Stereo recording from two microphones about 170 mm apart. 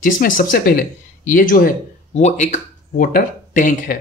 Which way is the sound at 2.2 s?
45° left (ahead or behind).